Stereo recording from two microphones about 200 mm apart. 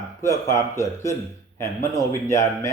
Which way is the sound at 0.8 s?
15° left (ahead or behind).